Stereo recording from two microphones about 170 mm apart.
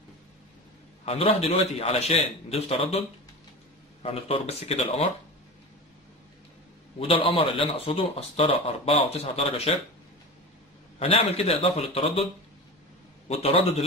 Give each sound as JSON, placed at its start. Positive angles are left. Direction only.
{"t": 1.0, "sound": "speech", "side_deg": 35}
{"t": 4.0, "sound": "speech", "side_deg": 35}
{"t": 7.0, "sound": "speech", "side_deg": 30}
{"t": 11.0, "sound": "speech", "side_deg": 35}
{"t": 13.3, "sound": "speech", "side_deg": 35}